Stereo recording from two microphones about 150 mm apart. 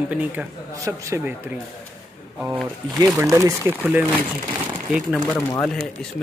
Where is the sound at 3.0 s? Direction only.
20° right (ahead or behind).